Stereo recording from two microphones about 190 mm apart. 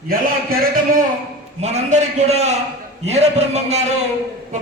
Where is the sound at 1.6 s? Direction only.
35° right (ahead or behind).